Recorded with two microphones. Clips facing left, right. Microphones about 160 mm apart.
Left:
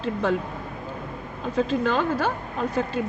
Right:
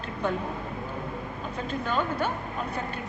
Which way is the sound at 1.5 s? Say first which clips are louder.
Left 7 dB; 90° left.